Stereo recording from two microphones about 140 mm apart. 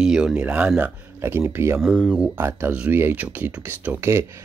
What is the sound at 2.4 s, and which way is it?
Speech, 15° right (ahead or behind).